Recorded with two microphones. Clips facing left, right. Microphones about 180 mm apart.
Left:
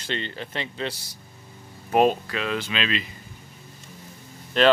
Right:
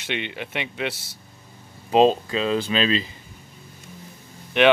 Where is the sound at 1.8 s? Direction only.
20° right (ahead or behind).